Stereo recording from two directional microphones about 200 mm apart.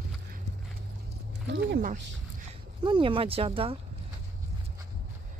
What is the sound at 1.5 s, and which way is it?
Speech, 55° right (ahead or behind).